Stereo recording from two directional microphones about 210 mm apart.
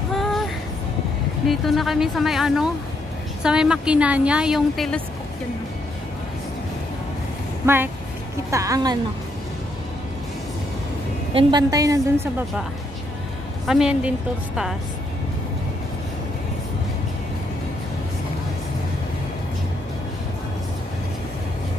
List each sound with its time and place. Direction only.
0.1 s child singing: centre (ahead or behind)
1.5 s a woman's voice: centre (ahead or behind)
7.6 s a woman's voice: 10° right (ahead or behind)
11.3 s a woman's voice: 20° right (ahead or behind)
13.7 s a woman's voice: 5° right (ahead or behind)